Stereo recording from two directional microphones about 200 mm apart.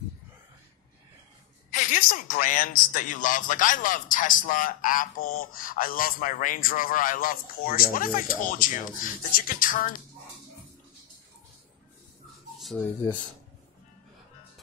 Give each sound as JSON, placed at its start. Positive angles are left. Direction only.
{"t": 1.7, "sound": "speech", "side_deg": 40}